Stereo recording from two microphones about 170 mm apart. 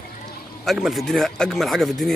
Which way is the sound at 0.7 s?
Centre (ahead or behind).